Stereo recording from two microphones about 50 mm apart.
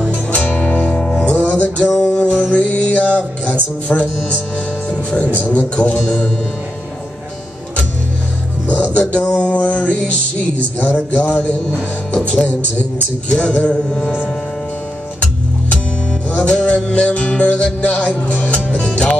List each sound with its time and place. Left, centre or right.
0.1 s music: left
0.8 s music: left
1.9 s music: left
2.1 s music: left
3.9 s mantra: left
5.5 s speech: left
8.6 s music: left
10.8 s speech: left
12.1 s mantra: left
16.4 s music: left